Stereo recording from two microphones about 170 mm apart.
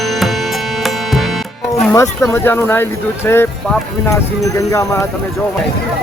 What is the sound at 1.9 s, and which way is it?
Speech, 15° left (ahead or behind).